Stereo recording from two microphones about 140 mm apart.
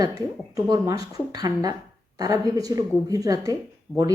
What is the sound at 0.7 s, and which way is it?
Speech, 25° right (ahead or behind).